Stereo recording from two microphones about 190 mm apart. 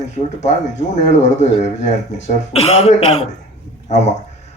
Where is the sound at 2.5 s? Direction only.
30° left (ahead or behind).